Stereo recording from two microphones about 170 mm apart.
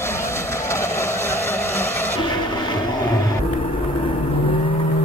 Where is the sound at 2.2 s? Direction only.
25° left (ahead or behind).